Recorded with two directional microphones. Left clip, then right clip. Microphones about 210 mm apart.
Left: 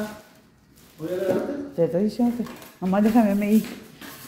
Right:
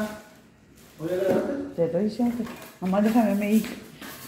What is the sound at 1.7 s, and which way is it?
A woman's voice, 45° left (ahead or behind).